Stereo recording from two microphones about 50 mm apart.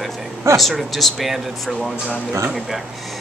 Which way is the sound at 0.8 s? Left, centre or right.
Centre.